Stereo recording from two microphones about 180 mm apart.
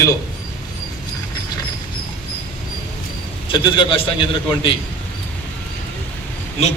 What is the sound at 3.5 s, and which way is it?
Speech, 25° left (ahead or behind).